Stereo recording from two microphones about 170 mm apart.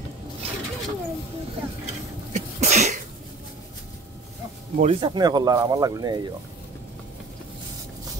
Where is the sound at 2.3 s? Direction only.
45° right (ahead or behind).